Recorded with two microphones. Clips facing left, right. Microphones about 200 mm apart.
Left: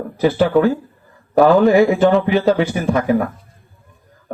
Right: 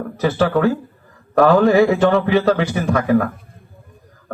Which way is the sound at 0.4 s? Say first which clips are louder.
Left 2 dB; 20° left (ahead or behind).